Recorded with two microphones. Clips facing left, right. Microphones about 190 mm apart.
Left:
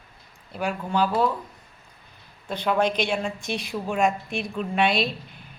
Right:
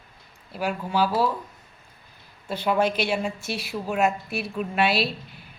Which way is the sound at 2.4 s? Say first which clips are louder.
Even; 5° right (ahead or behind).